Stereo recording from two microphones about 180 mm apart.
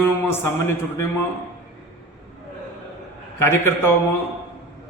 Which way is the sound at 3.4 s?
15° left (ahead or behind).